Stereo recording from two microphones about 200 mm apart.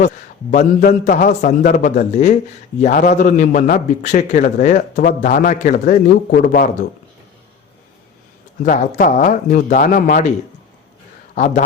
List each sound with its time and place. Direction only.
0.5 s a man's voice: 40° left (ahead or behind)
8.6 s a man's voice: 40° left (ahead or behind)
11.3 s a man's voice: 35° left (ahead or behind)